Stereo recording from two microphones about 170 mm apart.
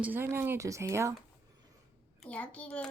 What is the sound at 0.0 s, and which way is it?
Speech, 10° right (ahead or behind).